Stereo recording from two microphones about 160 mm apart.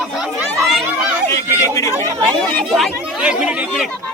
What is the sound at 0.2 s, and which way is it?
Chatter, 15° right (ahead or behind).